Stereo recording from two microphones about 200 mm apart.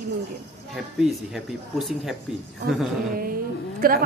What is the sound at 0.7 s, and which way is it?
Speech, centre (ahead or behind).